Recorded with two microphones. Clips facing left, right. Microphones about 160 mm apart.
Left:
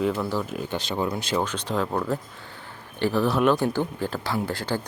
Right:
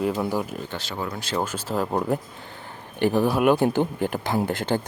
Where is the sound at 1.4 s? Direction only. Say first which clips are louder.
Right 2 dB; 5° right (ahead or behind).